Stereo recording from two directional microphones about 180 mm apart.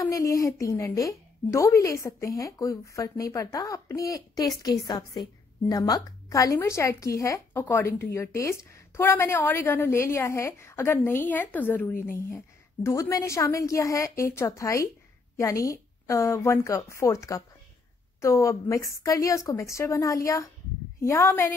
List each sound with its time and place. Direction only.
0.0 s a woman's voice: 20° left (ahead or behind)